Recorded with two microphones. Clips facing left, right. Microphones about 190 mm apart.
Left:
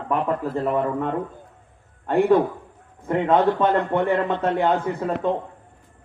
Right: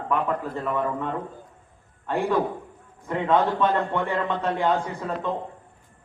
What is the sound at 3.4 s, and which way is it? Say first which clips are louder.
A man's voice: left 2 dB; 55° left (ahead or behind).